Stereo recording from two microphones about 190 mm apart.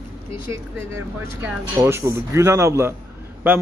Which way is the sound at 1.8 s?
15° right (ahead or behind).